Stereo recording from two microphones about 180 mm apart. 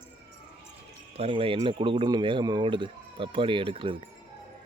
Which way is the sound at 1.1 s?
30° right (ahead or behind).